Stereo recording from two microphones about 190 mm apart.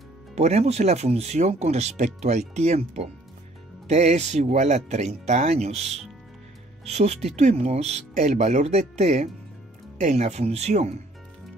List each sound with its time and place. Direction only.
0.4 s speech: 35° right (ahead or behind)